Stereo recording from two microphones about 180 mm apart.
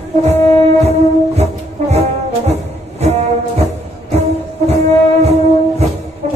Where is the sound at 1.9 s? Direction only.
35° right (ahead or behind).